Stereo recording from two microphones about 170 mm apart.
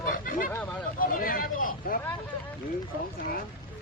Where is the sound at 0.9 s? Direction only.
55° left (ahead or behind).